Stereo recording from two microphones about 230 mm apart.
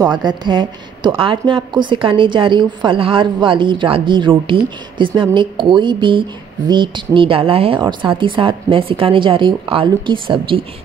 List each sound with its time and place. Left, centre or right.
0.0 s a woman's voice: centre